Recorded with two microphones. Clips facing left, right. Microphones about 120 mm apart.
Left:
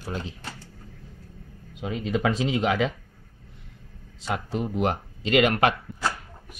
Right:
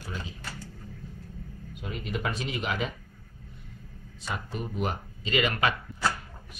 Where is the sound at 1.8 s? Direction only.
90° left.